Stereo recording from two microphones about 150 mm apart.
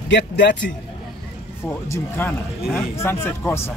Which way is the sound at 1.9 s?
15° left (ahead or behind).